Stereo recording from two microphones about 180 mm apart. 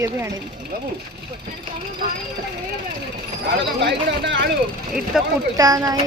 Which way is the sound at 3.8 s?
75° right (ahead or behind).